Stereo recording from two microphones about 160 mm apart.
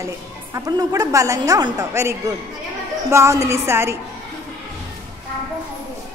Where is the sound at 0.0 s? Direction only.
20° right (ahead or behind).